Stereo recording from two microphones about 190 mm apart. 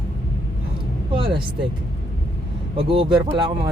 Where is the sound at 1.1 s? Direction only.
25° right (ahead or behind).